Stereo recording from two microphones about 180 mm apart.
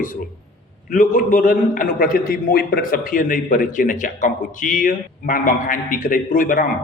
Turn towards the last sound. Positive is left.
turn(degrees=50)  # may be behind; listen again after turning